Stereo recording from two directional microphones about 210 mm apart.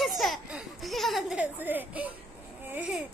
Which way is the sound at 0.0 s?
Centre (ahead or behind).